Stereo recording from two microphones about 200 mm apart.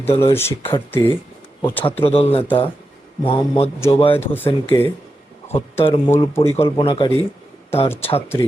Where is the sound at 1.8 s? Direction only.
30° left (ahead or behind).